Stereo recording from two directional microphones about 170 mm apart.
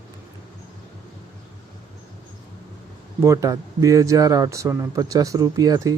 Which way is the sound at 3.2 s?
20° right (ahead or behind).